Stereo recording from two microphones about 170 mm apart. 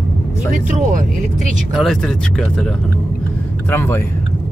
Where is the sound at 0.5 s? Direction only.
45° right (ahead or behind).